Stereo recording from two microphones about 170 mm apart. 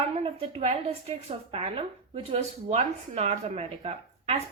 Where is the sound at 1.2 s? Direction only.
35° right (ahead or behind).